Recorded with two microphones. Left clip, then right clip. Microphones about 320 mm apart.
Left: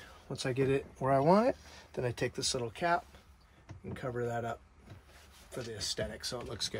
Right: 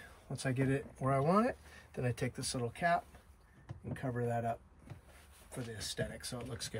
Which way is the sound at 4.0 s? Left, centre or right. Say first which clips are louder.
Left 1 dB; centre.